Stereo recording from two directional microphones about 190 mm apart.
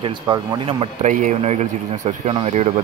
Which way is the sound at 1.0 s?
40° right (ahead or behind).